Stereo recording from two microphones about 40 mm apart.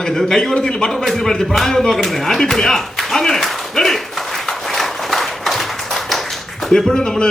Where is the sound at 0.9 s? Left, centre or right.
Centre.